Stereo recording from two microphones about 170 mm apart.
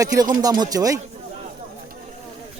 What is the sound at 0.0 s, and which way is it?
Speech, 20° right (ahead or behind).